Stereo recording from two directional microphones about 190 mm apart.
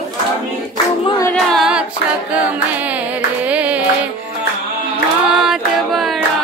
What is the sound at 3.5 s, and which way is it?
Music, 5° right (ahead or behind).